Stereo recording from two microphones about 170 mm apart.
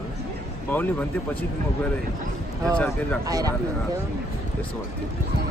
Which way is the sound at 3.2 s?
20° right (ahead or behind).